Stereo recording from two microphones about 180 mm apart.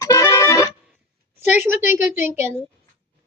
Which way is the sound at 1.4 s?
10° right (ahead or behind).